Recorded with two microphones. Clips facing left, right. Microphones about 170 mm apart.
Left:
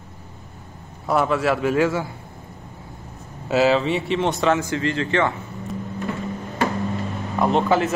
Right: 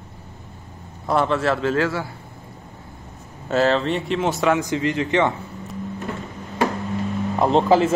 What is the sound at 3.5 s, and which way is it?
Speech, 5° left (ahead or behind).